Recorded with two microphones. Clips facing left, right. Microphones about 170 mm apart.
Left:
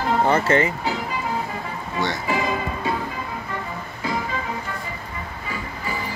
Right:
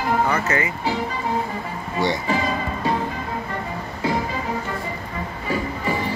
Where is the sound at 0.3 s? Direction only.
30° left (ahead or behind).